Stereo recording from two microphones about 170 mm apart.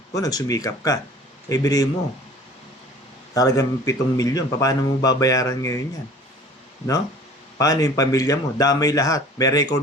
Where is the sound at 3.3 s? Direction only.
20° left (ahead or behind).